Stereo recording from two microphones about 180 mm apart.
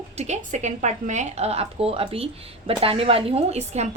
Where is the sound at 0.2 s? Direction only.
40° right (ahead or behind).